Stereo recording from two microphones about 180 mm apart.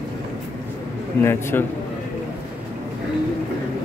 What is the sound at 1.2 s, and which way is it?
Speech, 15° left (ahead or behind).